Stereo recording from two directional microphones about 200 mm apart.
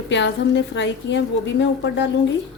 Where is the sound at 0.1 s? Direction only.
60° left (ahead or behind).